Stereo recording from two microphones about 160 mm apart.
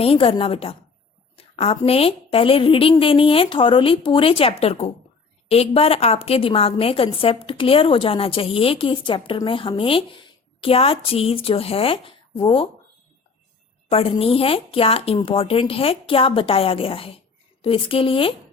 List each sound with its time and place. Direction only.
0.0 s a woman's voice: 35° left (ahead or behind)
13.9 s a woman's voice: 35° left (ahead or behind)